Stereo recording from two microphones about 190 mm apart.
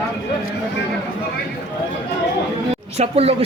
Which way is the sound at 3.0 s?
30° right (ahead or behind).